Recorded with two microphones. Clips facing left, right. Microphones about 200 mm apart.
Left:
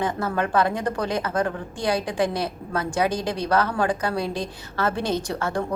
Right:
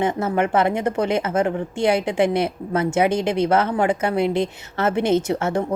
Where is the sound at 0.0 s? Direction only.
20° right (ahead or behind).